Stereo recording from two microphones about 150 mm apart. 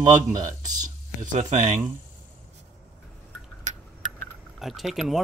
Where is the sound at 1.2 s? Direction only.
55° right (ahead or behind).